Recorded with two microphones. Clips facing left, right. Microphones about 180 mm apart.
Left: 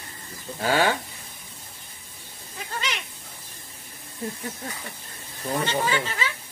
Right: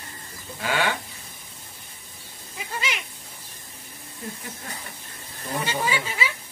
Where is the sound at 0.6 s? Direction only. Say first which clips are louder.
Left 4 dB; 35° left (ahead or behind).